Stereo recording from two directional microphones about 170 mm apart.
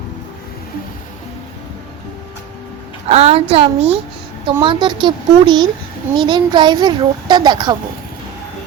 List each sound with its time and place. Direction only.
3.1 s a woman's voice: 40° right (ahead or behind)